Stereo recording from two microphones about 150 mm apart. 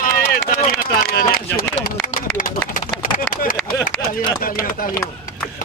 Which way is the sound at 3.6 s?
5° left (ahead or behind).